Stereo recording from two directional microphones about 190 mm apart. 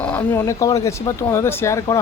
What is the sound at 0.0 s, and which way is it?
Speech, 10° left (ahead or behind).